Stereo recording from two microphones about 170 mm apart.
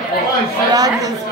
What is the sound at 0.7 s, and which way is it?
Speech, 20° right (ahead or behind).